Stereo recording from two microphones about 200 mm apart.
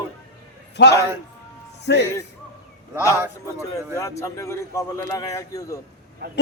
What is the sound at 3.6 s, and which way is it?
A man's voice, 15° left (ahead or behind).